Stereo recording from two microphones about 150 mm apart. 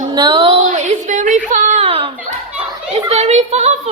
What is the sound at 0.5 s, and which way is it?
A woman's voice, 55° right (ahead or behind).